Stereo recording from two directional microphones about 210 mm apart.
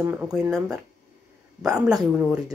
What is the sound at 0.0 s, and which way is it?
Speech, 10° right (ahead or behind).